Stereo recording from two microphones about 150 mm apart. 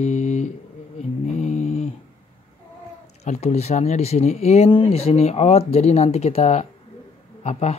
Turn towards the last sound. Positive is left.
turn(degrees=45)  # may be behind; listen again after turning